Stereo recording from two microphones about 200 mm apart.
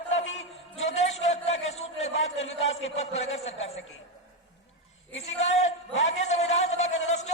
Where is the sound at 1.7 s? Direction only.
30° left (ahead or behind).